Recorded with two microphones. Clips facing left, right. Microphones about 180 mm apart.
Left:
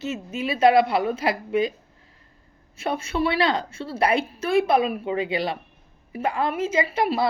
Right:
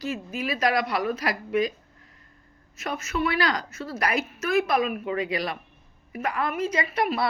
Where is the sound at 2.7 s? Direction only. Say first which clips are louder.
Left 4 dB; 30° left (ahead or behind).